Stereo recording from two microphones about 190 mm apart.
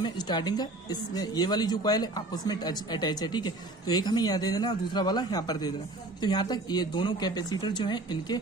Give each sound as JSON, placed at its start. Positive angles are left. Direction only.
{"t": 0.0, "sound": "a woman's voice", "side_deg": 20}